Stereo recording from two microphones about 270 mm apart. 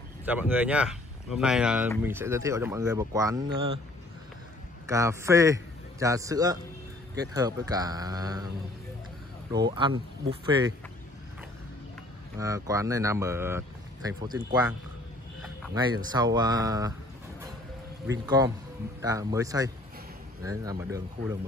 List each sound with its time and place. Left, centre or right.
0.2 s speech: centre
4.8 s a man's voice: centre
9.5 s speech: centre
12.4 s speech: centre
18.0 s speech: centre